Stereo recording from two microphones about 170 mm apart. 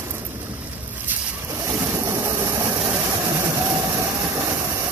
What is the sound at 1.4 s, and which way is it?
Vehicle, 15° right (ahead or behind).